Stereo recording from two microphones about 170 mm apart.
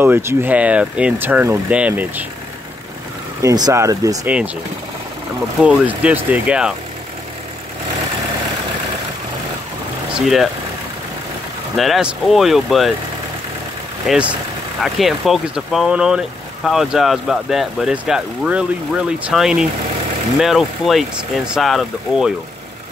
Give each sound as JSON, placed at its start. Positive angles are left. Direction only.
{"t": 0.0, "sound": "speech", "side_deg": -15}
{"t": 3.4, "sound": "speech", "side_deg": -20}
{"t": 5.6, "sound": "speech", "side_deg": -5}
{"t": 10.1, "sound": "speech", "side_deg": 0}
{"t": 11.7, "sound": "speech", "side_deg": 0}
{"t": 14.0, "sound": "speech", "side_deg": -5}